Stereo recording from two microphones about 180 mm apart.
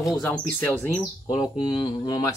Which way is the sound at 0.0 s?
5° left (ahead or behind).